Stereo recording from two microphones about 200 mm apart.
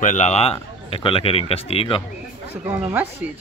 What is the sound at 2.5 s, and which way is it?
Speech, 10° right (ahead or behind).